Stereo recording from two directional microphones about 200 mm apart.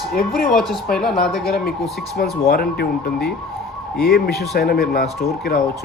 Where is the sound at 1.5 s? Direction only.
50° left (ahead or behind).